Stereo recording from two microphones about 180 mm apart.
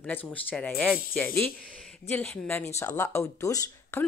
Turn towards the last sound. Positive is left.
turn(degrees=15)  # may be behind; listen again after turning